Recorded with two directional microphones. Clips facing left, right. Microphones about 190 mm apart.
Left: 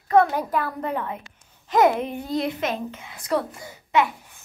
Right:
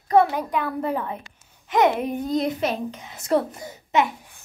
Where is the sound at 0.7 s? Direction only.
10° right (ahead or behind).